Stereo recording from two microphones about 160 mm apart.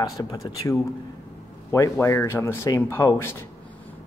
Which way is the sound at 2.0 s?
15° left (ahead or behind).